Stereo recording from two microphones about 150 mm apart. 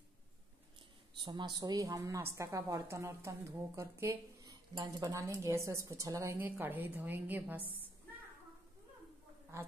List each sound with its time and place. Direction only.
1.2 s a woman's voice: 30° right (ahead or behind); by 7.9 s 10° right (ahead or behind)